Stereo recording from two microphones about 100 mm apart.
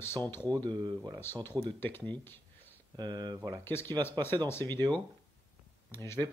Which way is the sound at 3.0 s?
45° right (ahead or behind).